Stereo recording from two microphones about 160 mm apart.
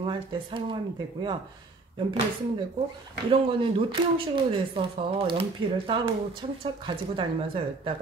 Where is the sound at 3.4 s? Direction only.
30° right (ahead or behind).